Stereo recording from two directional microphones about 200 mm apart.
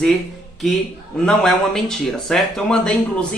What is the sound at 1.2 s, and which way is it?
Speech, 5° left (ahead or behind).